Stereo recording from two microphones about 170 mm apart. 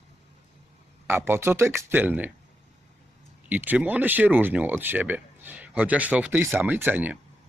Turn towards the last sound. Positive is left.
turn(degrees=-10)  # may be behind; listen again after turning